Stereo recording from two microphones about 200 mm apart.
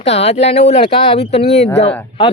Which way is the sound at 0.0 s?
30° left (ahead or behind).